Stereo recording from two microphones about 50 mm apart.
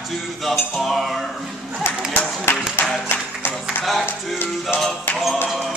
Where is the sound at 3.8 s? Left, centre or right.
Centre.